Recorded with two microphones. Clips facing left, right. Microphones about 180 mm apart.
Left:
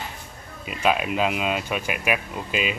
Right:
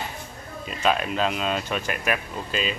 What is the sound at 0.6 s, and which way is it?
Speech, 10° left (ahead or behind).